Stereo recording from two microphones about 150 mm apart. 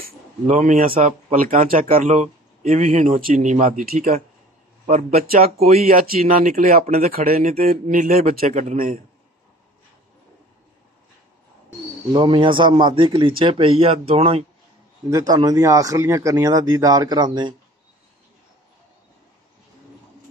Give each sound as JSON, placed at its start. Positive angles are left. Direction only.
{"t": 0.0, "sound": "speech", "side_deg": -65}
{"t": 5.9, "sound": "speech", "side_deg": -70}
{"t": 8.4, "sound": "speech", "side_deg": -55}
{"t": 12.1, "sound": "a man's voice", "side_deg": -30}
{"t": 15.0, "sound": "speech", "side_deg": -25}